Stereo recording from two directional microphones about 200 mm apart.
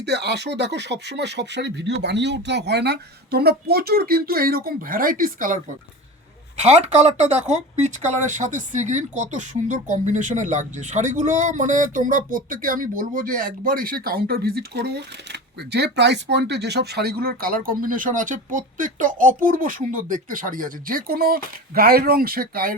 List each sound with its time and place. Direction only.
0.0 s speech: 55° right (ahead or behind)
6.6 s speech: 35° right (ahead or behind)